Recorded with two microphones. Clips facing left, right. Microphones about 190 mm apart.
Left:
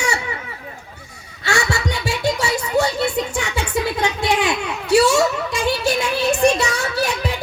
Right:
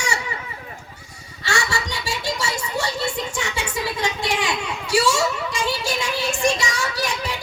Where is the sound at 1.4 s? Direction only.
60° left (ahead or behind).